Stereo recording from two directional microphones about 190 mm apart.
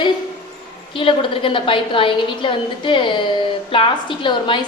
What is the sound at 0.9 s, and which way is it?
A woman's voice, 25° left (ahead or behind).